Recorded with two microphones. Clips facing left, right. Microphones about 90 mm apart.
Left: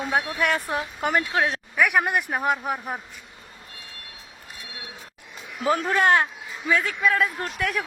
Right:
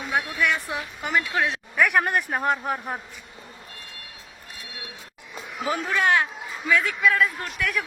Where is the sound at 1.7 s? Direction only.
5° left (ahead or behind).